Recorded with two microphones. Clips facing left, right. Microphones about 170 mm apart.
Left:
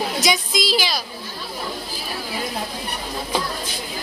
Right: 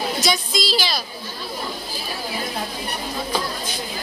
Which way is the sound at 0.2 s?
15° left (ahead or behind).